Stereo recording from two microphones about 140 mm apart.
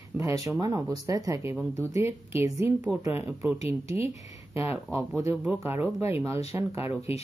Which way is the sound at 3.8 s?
45° left (ahead or behind).